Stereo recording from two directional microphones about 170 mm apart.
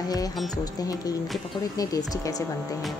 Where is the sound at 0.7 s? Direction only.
20° left (ahead or behind).